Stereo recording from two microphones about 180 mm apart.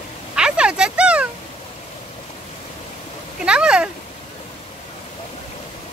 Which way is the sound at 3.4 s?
5° right (ahead or behind).